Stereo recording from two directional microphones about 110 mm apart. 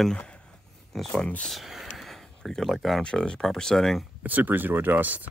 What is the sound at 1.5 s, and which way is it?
Speech, centre (ahead or behind).